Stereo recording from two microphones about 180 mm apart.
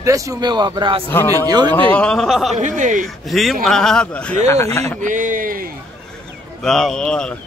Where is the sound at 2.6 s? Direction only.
45° right (ahead or behind).